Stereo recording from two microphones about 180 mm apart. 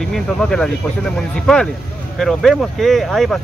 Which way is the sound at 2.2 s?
Centre (ahead or behind).